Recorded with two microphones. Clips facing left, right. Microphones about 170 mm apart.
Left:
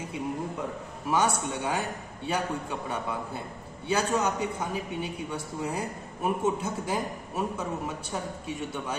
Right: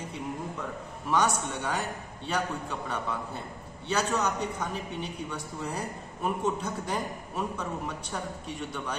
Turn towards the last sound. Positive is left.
turn(degrees=10)  # may be behind; listen again after turning